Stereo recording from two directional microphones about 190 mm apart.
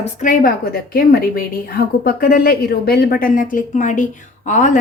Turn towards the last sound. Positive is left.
turn(degrees=40)  # may be behind; listen again after turning